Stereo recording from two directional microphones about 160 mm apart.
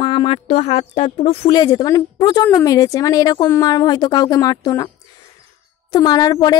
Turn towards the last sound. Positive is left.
turn(degrees=25)  # may be behind; listen again after turning